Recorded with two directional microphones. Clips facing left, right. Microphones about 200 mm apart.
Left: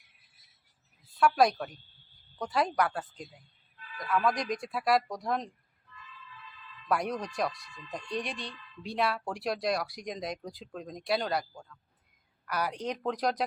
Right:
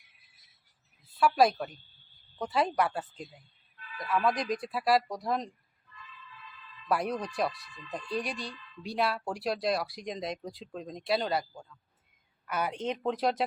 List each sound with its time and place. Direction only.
1.2 s speech: 5° right (ahead or behind)
6.8 s speech: 5° right (ahead or behind)
12.5 s a woman's voice: 25° right (ahead or behind)
12.9 s speech: 5° right (ahead or behind)